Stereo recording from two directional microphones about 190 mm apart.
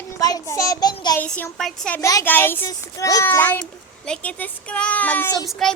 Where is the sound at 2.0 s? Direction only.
15° left (ahead or behind).